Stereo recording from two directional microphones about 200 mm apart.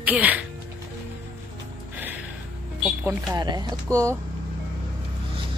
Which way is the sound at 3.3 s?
20° right (ahead or behind).